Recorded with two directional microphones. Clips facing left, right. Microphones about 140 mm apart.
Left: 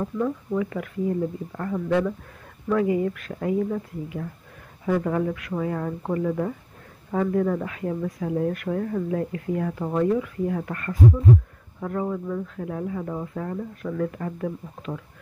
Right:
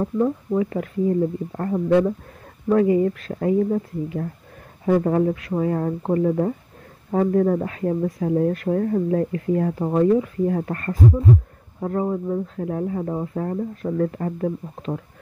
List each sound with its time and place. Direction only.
0.0 s speech: 30° right (ahead or behind)